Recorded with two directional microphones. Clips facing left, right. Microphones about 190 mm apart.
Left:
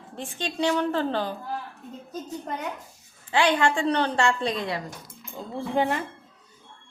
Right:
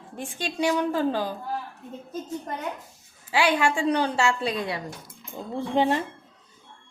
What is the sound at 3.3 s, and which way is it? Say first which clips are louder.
A woman's voice: left 1 dB; 10° right (ahead or behind).